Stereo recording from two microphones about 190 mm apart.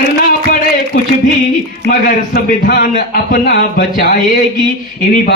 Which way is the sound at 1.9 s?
50° left (ahead or behind).